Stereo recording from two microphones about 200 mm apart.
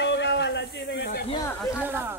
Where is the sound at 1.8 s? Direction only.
10° right (ahead or behind).